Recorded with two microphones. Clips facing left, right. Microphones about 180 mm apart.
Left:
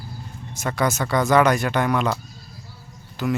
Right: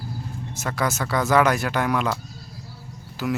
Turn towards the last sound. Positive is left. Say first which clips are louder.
# left 2 dB
turn(degrees=-5)  # may be behind; listen again after turning